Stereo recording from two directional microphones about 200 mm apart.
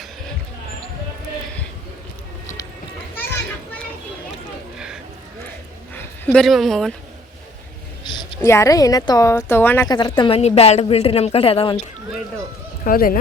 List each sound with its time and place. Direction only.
3.2 s children playing: 10° left (ahead or behind)
5.9 s speech: 5° left (ahead or behind)
8.4 s speech: 15° left (ahead or behind)
9.9 s speech: 20° left (ahead or behind)
12.8 s speech: 45° left (ahead or behind)